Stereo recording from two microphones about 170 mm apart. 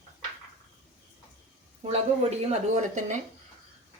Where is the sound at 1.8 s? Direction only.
40° right (ahead or behind).